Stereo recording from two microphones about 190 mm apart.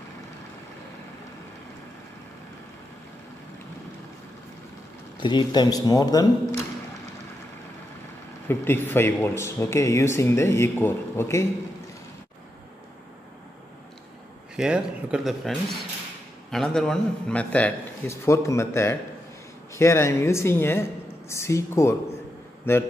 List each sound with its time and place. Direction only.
5.2 s speech: 25° left (ahead or behind)
8.5 s speech: 10° left (ahead or behind)
14.6 s speech: 5° right (ahead or behind); by 22.8 s 15° left (ahead or behind)